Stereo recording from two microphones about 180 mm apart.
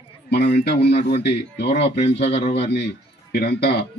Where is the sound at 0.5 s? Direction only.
65° left (ahead or behind).